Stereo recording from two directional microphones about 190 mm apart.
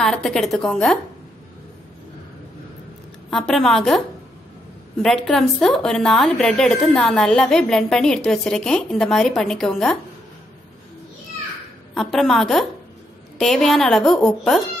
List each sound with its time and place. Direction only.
0.0 s a woman's voice: 5° left (ahead or behind)
3.3 s a woman's voice: centre (ahead or behind)
5.0 s a woman's voice: centre (ahead or behind)
11.9 s a woman's voice: centre (ahead or behind)